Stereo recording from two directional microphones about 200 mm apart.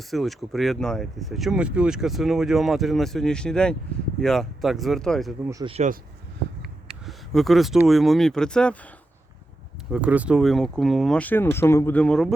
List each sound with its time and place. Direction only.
0.1 s speech: centre (ahead or behind)
5.5 s speech: 15° right (ahead or behind)
5.7 s speech: 35° right (ahead or behind)
6.6 s a sound: centre (ahead or behind)
7.8 s speech: centre (ahead or behind)
9.9 s speech: 5° right (ahead or behind)